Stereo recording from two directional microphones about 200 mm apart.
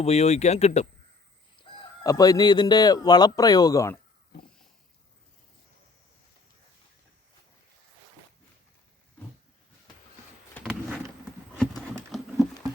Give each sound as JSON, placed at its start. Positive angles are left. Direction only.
{"t": 0.0, "sound": "speech", "side_deg": 30}
{"t": 10.7, "sound": "a sound", "side_deg": -5}
{"t": 11.5, "sound": "horse", "side_deg": 5}
{"t": 12.1, "sound": "patter", "side_deg": 0}